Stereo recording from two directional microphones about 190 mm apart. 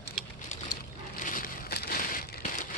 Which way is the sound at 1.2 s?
45° left (ahead or behind).